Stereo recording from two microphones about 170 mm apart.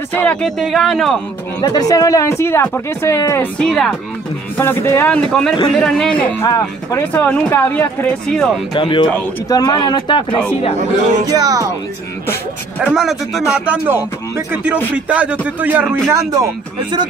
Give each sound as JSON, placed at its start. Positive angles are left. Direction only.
{"t": 0.1, "sound": "speech", "side_deg": 10}
{"t": 1.6, "sound": "speech", "side_deg": 25}
{"t": 3.5, "sound": "speech", "side_deg": 5}
{"t": 6.4, "sound": "speech", "side_deg": 20}
{"t": 7.2, "sound": "speech", "side_deg": 10}
{"t": 8.7, "sound": "speech", "side_deg": 30}
{"t": 10.8, "sound": "speech", "side_deg": -50}
{"t": 11.2, "sound": "speech", "side_deg": -20}
{"t": 12.8, "sound": "speech", "side_deg": -5}
{"t": 15.0, "sound": "speech", "side_deg": -10}